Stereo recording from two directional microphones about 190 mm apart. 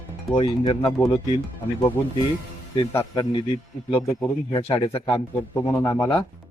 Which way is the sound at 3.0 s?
25° left (ahead or behind).